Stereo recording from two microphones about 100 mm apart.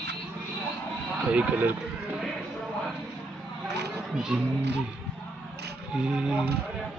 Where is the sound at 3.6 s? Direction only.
5° right (ahead or behind).